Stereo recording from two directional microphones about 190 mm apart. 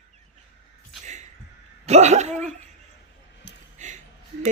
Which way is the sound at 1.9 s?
35° right (ahead or behind).